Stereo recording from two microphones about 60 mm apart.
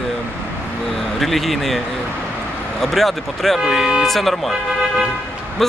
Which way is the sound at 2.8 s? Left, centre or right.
Centre.